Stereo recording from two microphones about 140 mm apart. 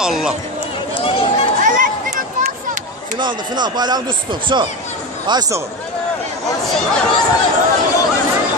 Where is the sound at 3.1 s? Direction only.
30° right (ahead or behind).